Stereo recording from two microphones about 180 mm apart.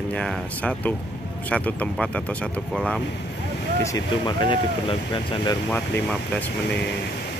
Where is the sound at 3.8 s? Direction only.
20° left (ahead or behind).